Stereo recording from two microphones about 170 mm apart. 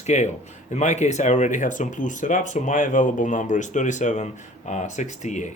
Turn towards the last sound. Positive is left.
turn(degrees=45)  # may be behind; listen again after turning